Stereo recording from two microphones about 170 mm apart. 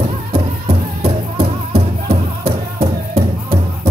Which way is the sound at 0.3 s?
35° right (ahead or behind).